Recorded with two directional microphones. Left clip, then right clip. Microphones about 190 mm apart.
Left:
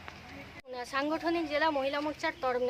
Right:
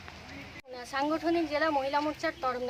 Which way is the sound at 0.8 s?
20° left (ahead or behind).